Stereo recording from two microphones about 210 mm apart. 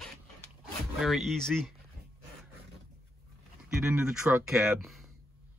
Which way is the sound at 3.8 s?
5° right (ahead or behind).